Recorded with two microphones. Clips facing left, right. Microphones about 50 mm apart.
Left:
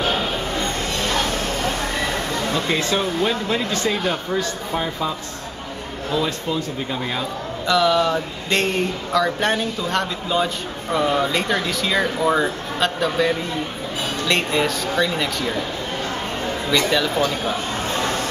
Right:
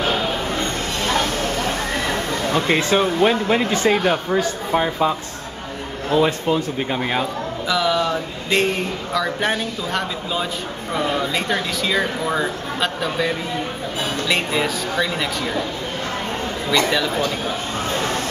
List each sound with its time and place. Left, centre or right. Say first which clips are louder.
2.5 s speech: right 5 dB; right
7.6 s speech: left 3 dB; centre